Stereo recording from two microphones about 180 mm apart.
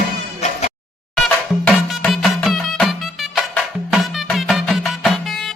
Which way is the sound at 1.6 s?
5° left (ahead or behind).